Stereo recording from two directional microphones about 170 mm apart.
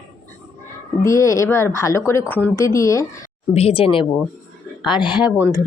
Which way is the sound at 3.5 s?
35° left (ahead or behind).